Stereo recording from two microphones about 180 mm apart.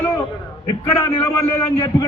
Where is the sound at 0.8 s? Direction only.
20° left (ahead or behind).